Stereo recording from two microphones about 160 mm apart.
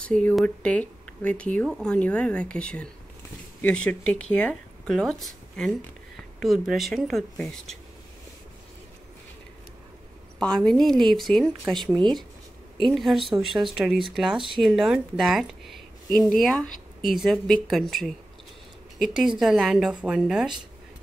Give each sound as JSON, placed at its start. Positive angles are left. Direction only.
{"t": 0.0, "sound": "speech", "side_deg": 5}
{"t": 10.4, "sound": "speech", "side_deg": 5}
{"t": 11.9, "sound": "speech", "side_deg": -25}
{"t": 12.8, "sound": "speech", "side_deg": 0}